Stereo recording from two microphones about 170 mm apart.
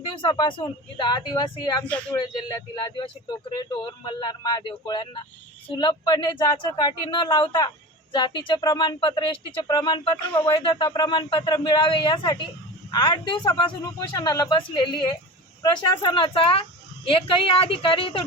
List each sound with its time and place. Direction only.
0.0 s speech: 30° left (ahead or behind)
1.8 s speech: 10° left (ahead or behind)
2.1 s a woman's voice: 25° left (ahead or behind)